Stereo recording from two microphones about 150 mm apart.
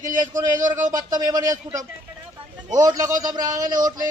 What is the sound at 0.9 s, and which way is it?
Speech, 25° right (ahead or behind).